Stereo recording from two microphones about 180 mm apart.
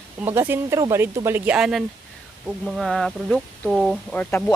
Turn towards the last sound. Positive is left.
turn(degrees=10)  # may be behind; listen again after turning